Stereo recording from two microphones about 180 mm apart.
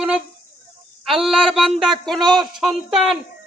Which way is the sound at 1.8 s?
Centre (ahead or behind).